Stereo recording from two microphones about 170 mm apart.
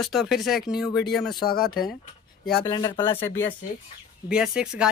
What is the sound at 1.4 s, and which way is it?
Speech, 60° left (ahead or behind).